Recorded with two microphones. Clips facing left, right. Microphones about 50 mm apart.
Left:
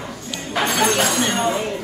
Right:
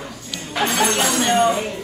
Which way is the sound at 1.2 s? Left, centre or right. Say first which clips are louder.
Right 4 dB; right.